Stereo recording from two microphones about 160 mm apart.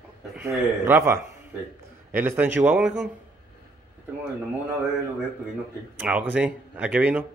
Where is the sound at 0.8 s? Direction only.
15° right (ahead or behind).